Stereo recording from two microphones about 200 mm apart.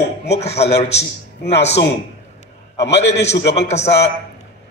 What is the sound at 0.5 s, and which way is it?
A man's voice, 55° left (ahead or behind).